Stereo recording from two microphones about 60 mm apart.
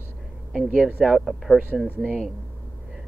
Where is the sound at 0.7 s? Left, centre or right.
Centre.